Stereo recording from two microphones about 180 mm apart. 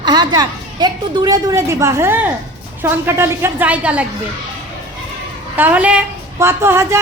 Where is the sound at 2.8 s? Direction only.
15° right (ahead or behind).